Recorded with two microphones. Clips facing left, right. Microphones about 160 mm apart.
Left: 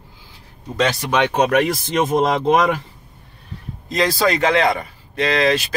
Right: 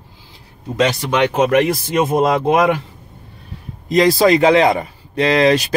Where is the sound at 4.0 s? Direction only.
15° right (ahead or behind).